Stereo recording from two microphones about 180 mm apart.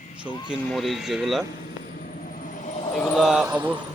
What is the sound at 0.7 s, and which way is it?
Speech, centre (ahead or behind).